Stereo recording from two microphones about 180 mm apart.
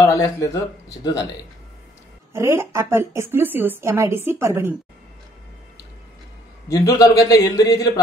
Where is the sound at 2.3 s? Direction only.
15° right (ahead or behind).